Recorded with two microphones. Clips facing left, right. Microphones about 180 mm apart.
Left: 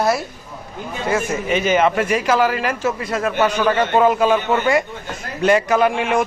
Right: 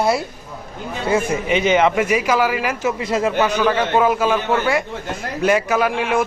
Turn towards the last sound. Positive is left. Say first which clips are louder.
# left 2 dB
turn(degrees=0)  # may be behind; listen again after turning